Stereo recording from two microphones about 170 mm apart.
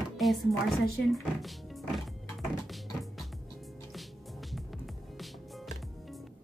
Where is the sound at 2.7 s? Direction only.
Centre (ahead or behind).